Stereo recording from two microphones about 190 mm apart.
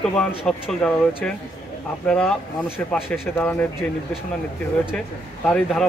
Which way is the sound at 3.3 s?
10° left (ahead or behind).